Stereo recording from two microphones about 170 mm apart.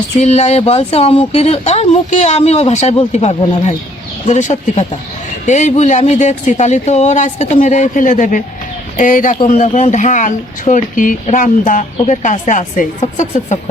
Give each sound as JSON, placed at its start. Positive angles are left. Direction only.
{"t": 0.2, "sound": "speech", "side_deg": 40}